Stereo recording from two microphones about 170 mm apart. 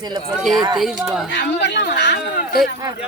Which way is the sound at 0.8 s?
Centre (ahead or behind).